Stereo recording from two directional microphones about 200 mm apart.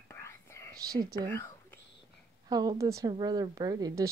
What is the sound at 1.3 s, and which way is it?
Whispering, 10° left (ahead or behind).